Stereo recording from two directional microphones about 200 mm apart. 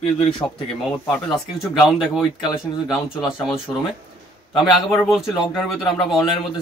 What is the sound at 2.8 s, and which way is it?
Speech, 5° right (ahead or behind).